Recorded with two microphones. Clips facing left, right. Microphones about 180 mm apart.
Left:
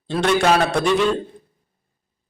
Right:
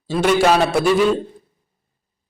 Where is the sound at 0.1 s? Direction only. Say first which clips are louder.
Right 2 dB; 5° right (ahead or behind).